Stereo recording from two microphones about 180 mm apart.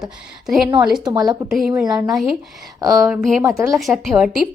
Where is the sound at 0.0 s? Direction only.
Centre (ahead or behind).